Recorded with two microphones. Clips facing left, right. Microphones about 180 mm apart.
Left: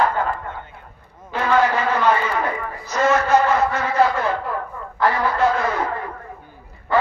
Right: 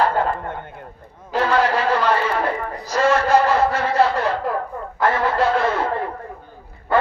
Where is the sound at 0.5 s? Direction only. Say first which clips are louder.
Right 3 dB; 55° right (ahead or behind).